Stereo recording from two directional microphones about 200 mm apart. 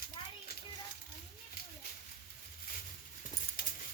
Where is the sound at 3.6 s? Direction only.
45° left (ahead or behind).